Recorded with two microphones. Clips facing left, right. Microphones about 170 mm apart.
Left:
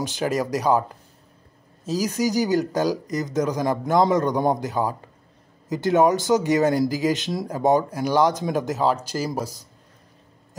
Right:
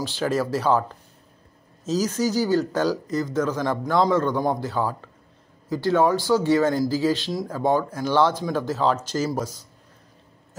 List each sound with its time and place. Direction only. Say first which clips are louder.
0.2 s speech: even; 15° left (ahead or behind)
1.9 s speech: even; 15° left (ahead or behind)